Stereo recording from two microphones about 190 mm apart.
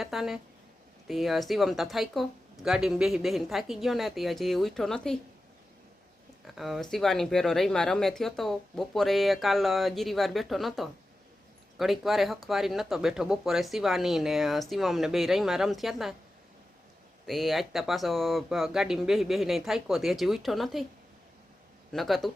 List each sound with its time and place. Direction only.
0.0 s speech: centre (ahead or behind)
6.6 s speech: centre (ahead or behind)
17.2 s speech: centre (ahead or behind)
21.9 s speech: centre (ahead or behind)